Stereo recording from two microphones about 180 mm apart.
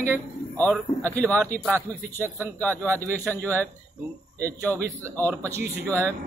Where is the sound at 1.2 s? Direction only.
15° right (ahead or behind).